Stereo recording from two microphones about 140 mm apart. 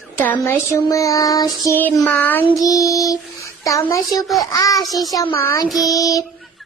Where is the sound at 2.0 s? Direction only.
10° left (ahead or behind).